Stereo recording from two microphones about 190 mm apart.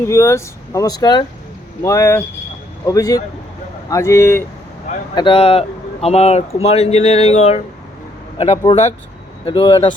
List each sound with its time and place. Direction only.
0.1 s speech: 15° left (ahead or behind)
5.1 s speech: 25° left (ahead or behind)